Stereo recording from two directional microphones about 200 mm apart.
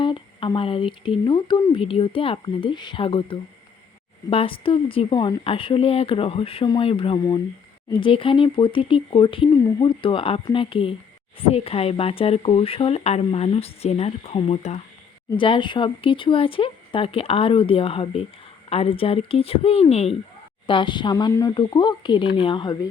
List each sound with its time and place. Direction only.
0.0 s speech: 25° left (ahead or behind)